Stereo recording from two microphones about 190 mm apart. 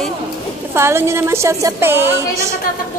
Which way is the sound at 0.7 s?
15° right (ahead or behind).